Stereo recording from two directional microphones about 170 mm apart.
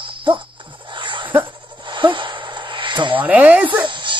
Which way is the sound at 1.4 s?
30° right (ahead or behind).